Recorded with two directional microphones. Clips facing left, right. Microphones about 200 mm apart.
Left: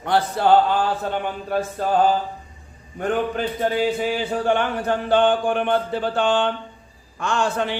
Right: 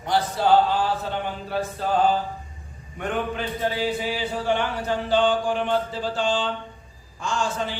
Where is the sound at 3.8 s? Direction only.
50° left (ahead or behind).